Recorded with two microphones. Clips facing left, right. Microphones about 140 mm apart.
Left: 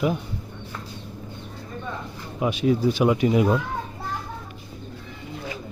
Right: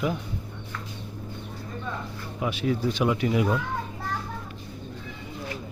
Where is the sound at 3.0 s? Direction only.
20° left (ahead or behind).